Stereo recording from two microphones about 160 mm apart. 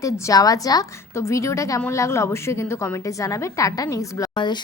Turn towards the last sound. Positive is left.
turn(degrees=25)  # may be behind; listen again after turning